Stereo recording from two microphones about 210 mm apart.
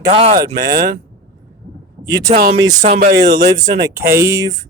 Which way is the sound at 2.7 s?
35° right (ahead or behind).